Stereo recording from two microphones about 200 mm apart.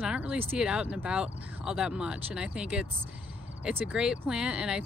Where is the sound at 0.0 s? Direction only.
5° right (ahead or behind).